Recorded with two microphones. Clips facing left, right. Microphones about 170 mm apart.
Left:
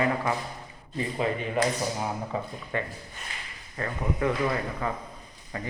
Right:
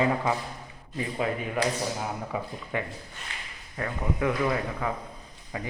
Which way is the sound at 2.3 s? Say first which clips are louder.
Even; 10° right (ahead or behind).